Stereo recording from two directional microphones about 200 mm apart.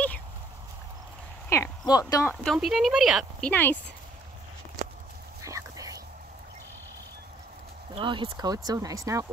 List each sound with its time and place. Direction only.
1.5 s speech: 15° left (ahead or behind)
2.4 s a woman's voice: centre (ahead or behind)
5.4 s whispering: 15° right (ahead or behind)
7.9 s speech: 25° right (ahead or behind)